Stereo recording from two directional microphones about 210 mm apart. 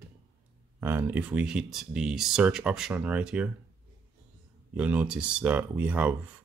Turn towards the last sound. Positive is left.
turn(degrees=-5)  # may be behind; listen again after turning